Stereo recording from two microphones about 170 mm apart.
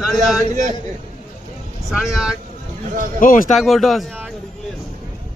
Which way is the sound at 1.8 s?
Centre (ahead or behind).